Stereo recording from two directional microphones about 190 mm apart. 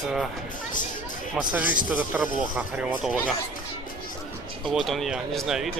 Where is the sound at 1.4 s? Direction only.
5° right (ahead or behind).